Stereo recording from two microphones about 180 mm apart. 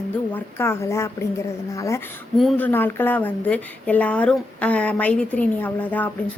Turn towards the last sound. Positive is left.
turn(degrees=10)  # may be behind; listen again after turning